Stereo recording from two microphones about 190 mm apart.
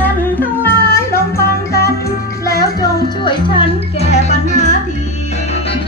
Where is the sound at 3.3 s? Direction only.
25° left (ahead or behind).